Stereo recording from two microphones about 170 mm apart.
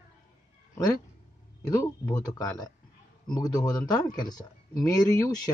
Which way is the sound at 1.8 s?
20° left (ahead or behind).